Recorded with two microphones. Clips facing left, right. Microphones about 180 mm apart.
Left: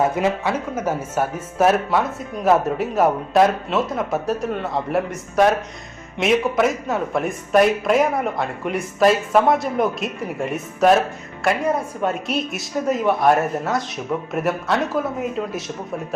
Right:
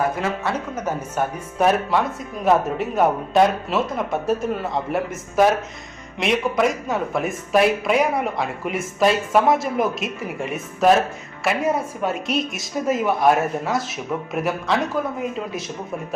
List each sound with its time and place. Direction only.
0.0 s speech: 20° left (ahead or behind)
0.5 s speech: 10° left (ahead or behind)